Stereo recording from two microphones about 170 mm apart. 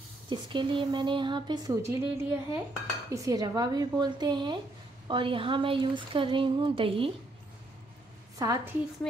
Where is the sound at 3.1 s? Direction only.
20° right (ahead or behind).